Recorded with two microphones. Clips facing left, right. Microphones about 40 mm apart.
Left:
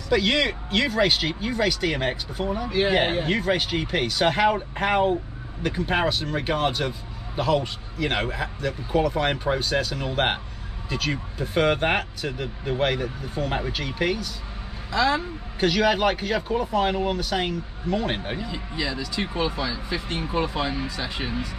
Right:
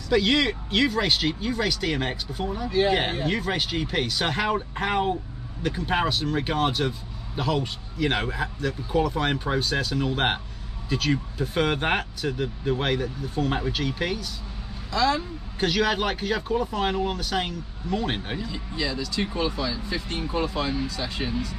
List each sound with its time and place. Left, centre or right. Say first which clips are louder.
0.1 s speech: even; centre
3.1 s a man's voice: left 2 dB; left
3.3 s a man's voice: left 3 dB; centre
15.6 s speech: left 3 dB; centre
18.4 s speech: left 1 dB; centre